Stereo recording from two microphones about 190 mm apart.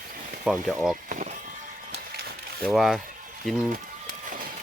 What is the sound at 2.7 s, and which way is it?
Speech, centre (ahead or behind).